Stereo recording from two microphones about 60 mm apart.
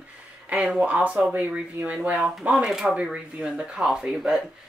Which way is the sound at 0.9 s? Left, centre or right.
Right.